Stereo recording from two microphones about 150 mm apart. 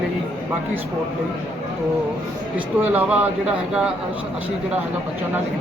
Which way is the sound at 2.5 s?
10° right (ahead or behind).